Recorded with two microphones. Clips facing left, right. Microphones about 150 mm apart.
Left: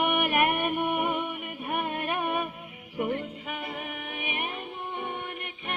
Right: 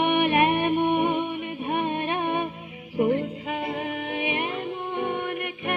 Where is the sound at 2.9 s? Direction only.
35° right (ahead or behind).